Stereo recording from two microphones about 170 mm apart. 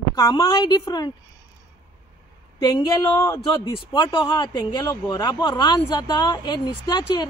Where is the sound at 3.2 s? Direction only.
20° left (ahead or behind).